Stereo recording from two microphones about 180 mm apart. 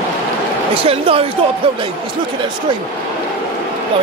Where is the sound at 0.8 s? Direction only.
30° right (ahead or behind).